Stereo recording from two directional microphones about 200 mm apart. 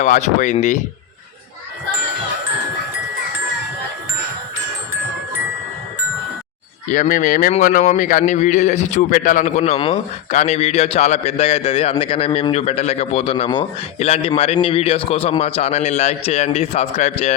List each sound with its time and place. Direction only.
0.0 s a man's voice: 40° left (ahead or behind)
6.8 s a man's voice: 40° left (ahead or behind)